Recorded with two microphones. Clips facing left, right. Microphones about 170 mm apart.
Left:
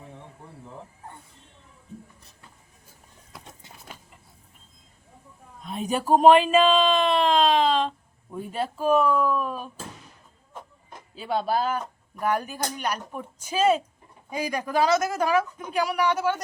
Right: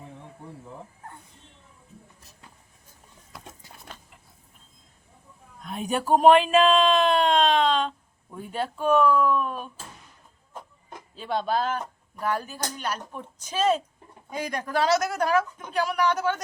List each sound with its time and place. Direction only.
5.6 s speech: centre (ahead or behind)
11.1 s speech: 5° left (ahead or behind)